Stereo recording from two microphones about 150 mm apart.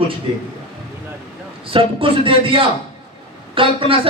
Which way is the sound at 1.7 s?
35° right (ahead or behind).